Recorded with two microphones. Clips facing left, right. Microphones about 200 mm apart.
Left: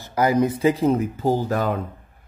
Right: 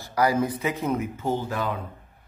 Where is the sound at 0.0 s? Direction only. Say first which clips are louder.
Left 4 dB; 20° left (ahead or behind).